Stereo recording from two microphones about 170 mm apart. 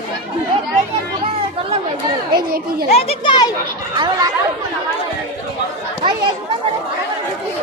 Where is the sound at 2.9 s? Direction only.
30° left (ahead or behind).